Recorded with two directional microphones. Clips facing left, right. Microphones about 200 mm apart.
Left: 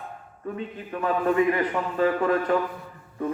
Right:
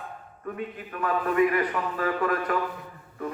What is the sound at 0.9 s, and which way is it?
A man's voice, 30° left (ahead or behind).